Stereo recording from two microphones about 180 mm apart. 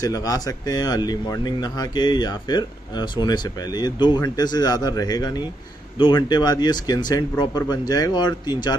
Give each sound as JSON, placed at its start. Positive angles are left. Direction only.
{"t": 0.0, "sound": "speech", "side_deg": 20}